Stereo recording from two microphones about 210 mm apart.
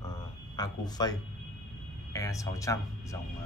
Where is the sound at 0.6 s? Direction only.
20° left (ahead or behind).